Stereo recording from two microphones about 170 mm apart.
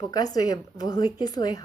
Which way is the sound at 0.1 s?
20° left (ahead or behind).